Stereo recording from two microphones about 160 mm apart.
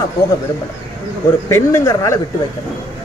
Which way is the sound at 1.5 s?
15° left (ahead or behind).